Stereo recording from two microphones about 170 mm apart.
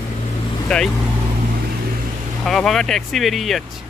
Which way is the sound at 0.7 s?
5° left (ahead or behind).